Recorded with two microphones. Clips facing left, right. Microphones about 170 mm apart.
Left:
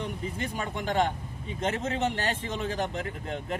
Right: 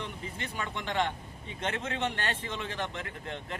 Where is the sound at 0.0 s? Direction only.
45° left (ahead or behind).